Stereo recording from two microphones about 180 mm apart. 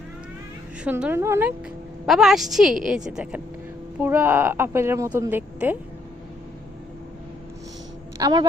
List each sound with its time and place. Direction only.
0.9 s a woman's voice: 10° right (ahead or behind)
2.0 s a woman's voice: centre (ahead or behind)
8.2 s a woman's voice: 20° right (ahead or behind)